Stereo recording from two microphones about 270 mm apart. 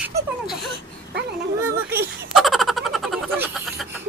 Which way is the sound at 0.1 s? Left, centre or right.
Right.